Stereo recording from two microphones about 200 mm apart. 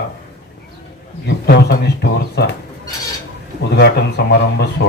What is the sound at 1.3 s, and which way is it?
A man's voice, 55° left (ahead or behind).